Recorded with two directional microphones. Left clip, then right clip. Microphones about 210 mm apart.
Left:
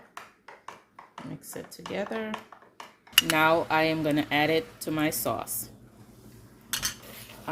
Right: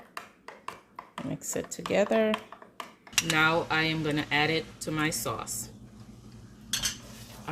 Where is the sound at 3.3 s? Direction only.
40° left (ahead or behind).